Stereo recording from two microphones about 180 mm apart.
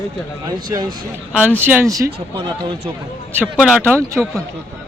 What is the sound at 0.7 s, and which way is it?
Speech, 25° right (ahead or behind).